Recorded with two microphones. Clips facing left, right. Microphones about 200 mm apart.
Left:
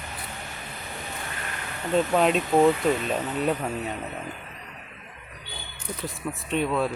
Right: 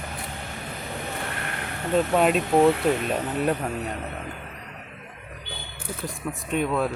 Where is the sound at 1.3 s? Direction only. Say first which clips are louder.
Right 3 dB; 60° right (ahead or behind).